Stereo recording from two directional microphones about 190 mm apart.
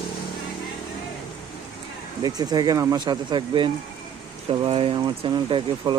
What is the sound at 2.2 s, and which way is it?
Speech, 20° right (ahead or behind).